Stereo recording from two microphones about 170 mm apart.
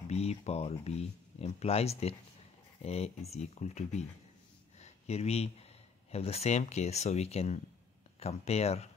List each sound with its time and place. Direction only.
0.1 s speech: 40° left (ahead or behind)
4.7 s a sound: 40° left (ahead or behind)
6.1 s speech: 35° left (ahead or behind)